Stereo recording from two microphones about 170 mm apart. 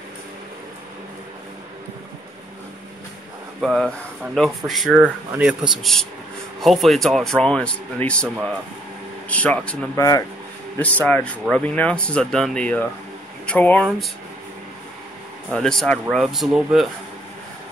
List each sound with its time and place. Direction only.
3.6 s speech: centre (ahead or behind)
9.3 s speech: 5° left (ahead or behind)
9.9 s speech: 20° left (ahead or behind)
10.8 s speech: 10° left (ahead or behind)
15.5 s speech: 5° left (ahead or behind)